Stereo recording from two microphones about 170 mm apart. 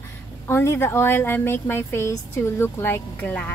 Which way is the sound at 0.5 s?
15° left (ahead or behind).